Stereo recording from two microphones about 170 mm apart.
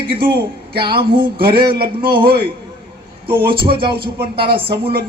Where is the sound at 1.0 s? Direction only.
30° right (ahead or behind).